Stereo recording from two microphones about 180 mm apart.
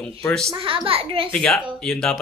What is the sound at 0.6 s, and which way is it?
Speech, 30° right (ahead or behind).